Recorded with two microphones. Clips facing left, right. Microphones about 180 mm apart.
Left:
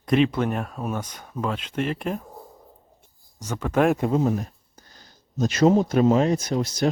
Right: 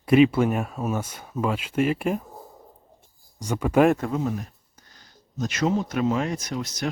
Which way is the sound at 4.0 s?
30° left (ahead or behind).